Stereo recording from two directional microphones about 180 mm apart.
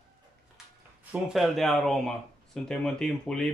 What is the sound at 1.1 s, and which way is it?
Speech, centre (ahead or behind).